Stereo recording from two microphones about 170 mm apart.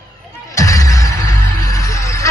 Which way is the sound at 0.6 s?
20° left (ahead or behind).